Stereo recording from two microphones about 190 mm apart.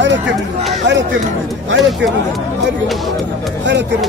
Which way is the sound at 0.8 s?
70° right (ahead or behind).